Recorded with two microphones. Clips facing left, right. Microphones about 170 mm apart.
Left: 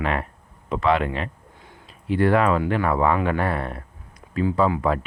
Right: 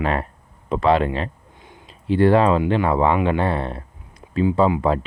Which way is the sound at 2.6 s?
25° right (ahead or behind).